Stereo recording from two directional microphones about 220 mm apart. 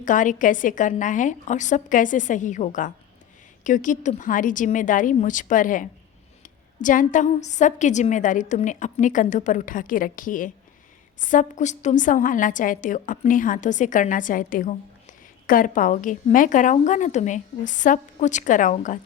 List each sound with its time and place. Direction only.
0.0 s a woman's voice: 35° left (ahead or behind)